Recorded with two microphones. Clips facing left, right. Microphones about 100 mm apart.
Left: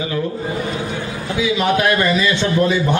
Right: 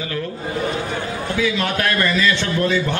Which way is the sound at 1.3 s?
15° left (ahead or behind).